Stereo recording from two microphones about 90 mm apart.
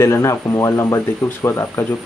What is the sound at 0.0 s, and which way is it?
Speech, 35° left (ahead or behind).